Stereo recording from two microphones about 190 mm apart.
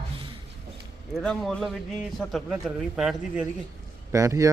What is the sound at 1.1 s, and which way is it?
A man's voice, centre (ahead or behind).